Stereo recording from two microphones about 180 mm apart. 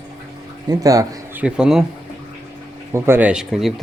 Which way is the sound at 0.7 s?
20° right (ahead or behind).